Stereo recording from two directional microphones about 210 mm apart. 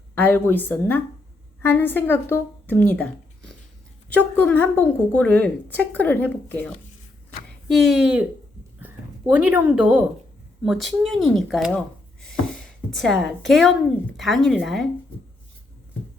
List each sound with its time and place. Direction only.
0.2 s speech: 10° left (ahead or behind)
7.7 s speech: centre (ahead or behind)
9.3 s speech: 5° right (ahead or behind)
12.2 s a sound: centre (ahead or behind)
14.2 s speech: centre (ahead or behind)